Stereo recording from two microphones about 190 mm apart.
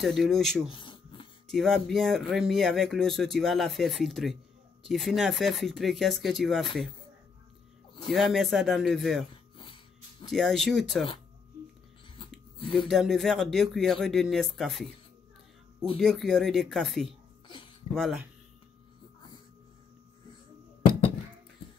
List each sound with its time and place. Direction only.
0.0 s speech: centre (ahead or behind)
0.7 s a sound: 25° left (ahead or behind)
1.5 s speech: centre (ahead or behind)
8.1 s speech: centre (ahead or behind)
10.3 s speech: centre (ahead or behind)
12.7 s speech: centre (ahead or behind)
16.0 s speech: 5° left (ahead or behind)